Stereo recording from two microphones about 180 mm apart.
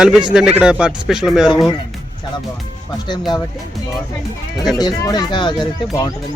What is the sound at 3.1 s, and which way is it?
Speech, 25° left (ahead or behind).